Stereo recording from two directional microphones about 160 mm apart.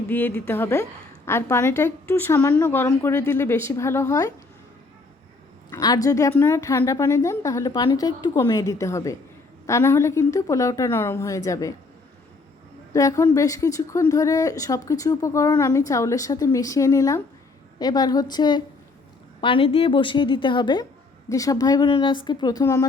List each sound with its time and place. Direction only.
0.1 s a woman's voice: 10° left (ahead or behind)
5.7 s a woman's voice: 20° left (ahead or behind)
12.9 s a woman's voice: 20° left (ahead or behind)